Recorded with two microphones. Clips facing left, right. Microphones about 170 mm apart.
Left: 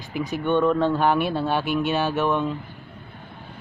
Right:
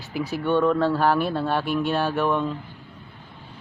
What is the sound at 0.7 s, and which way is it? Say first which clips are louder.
Speech: even; 20° left (ahead or behind).